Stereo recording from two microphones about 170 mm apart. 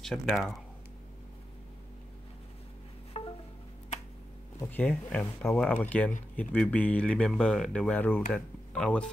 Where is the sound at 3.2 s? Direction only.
35° left (ahead or behind).